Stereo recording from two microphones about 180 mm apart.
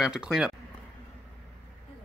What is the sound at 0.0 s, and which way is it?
Speech, 5° right (ahead or behind).